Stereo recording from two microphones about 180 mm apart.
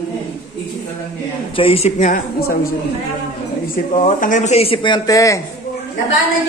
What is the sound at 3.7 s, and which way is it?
Speech, 45° left (ahead or behind).